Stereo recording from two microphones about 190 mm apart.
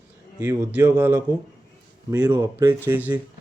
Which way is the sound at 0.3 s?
10° right (ahead or behind).